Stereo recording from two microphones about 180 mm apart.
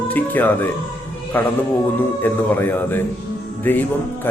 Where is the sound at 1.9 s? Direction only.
10° left (ahead or behind).